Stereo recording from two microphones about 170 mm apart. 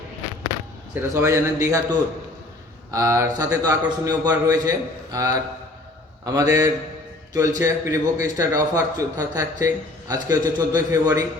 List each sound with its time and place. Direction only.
1.0 s a man's voice: 20° right (ahead or behind)